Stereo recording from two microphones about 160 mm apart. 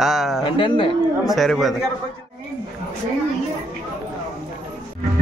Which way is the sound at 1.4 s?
Centre (ahead or behind).